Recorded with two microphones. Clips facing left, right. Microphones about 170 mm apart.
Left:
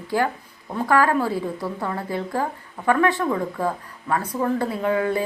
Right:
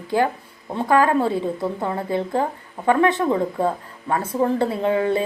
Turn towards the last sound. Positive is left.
turn(degrees=-25)  # may be behind; listen again after turning